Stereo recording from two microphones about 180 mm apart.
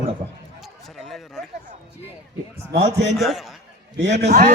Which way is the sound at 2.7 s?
40° right (ahead or behind).